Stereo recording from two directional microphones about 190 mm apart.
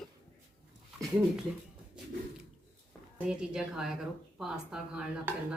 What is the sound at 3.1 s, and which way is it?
Speech, 5° right (ahead or behind).